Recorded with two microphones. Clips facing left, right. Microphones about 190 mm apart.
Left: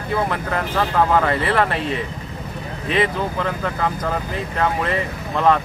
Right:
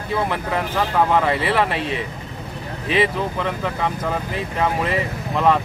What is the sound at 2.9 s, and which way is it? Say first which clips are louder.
Speech: even; 5° right (ahead or behind).